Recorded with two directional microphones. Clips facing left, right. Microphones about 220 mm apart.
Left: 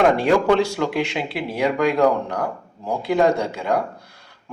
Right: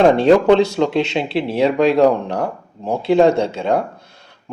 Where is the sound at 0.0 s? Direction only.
25° right (ahead or behind).